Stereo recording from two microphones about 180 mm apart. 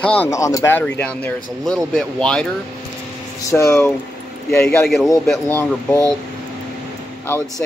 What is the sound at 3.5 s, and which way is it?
Speech, 15° left (ahead or behind).